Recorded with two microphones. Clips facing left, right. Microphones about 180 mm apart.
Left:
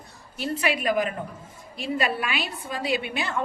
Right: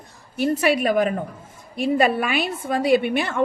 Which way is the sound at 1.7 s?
50° right (ahead or behind).